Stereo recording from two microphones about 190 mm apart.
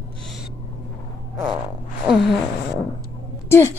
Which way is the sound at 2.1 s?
Centre (ahead or behind).